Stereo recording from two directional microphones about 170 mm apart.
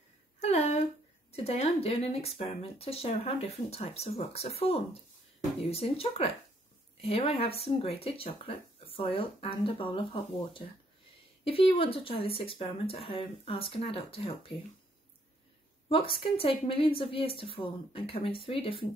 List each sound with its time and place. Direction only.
0.4 s a sound: 40° left (ahead or behind)
1.3 s speech: 40° left (ahead or behind)
15.9 s speech: 35° left (ahead or behind)